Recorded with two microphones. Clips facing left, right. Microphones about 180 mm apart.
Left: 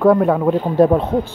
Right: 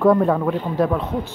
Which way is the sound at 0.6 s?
30° left (ahead or behind).